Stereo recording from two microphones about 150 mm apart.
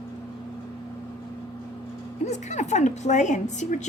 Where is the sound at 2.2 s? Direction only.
50° left (ahead or behind).